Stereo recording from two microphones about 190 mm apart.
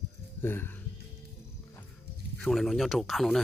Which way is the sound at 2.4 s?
Centre (ahead or behind).